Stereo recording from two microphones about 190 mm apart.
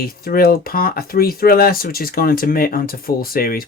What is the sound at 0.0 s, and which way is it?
Speech, 50° left (ahead or behind).